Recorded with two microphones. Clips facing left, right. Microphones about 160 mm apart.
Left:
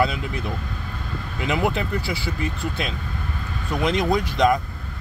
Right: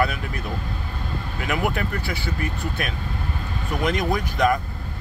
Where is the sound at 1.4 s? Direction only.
20° left (ahead or behind).